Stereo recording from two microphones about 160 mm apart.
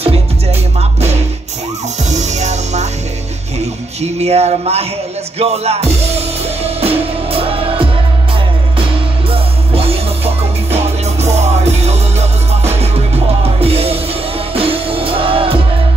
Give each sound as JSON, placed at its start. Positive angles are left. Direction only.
{"t": 0.0, "sound": "music", "side_deg": -40}
{"t": 9.3, "sound": "music", "side_deg": -35}